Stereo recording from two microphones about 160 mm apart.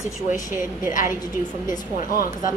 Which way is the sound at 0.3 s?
15° right (ahead or behind).